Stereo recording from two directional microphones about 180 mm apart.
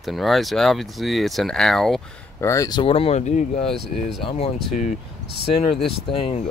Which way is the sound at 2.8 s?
30° left (ahead or behind).